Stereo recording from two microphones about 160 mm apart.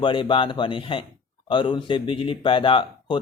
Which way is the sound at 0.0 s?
30° left (ahead or behind).